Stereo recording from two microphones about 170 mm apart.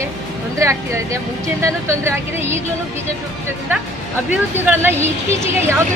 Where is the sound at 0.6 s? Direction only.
15° right (ahead or behind).